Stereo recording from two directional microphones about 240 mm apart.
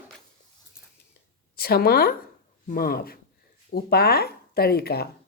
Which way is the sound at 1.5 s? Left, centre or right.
Left.